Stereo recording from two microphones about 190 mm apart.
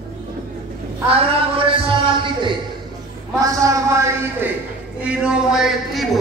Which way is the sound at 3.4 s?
15° right (ahead or behind).